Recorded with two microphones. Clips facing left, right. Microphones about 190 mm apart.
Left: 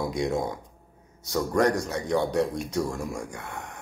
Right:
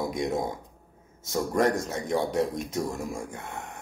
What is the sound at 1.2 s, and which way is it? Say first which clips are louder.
A man's voice: left 1 dB; 20° right (ahead or behind).